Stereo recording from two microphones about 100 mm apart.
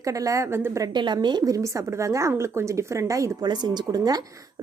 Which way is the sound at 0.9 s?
50° right (ahead or behind).